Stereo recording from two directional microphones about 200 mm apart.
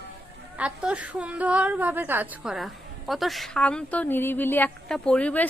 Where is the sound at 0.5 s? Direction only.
5° right (ahead or behind).